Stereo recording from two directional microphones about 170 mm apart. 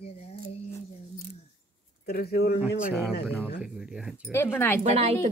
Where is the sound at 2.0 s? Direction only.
65° left (ahead or behind).